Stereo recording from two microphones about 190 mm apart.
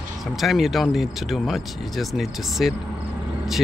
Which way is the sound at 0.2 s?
Centre (ahead or behind).